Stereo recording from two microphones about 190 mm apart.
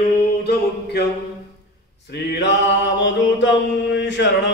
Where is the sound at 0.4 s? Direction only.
60° left (ahead or behind).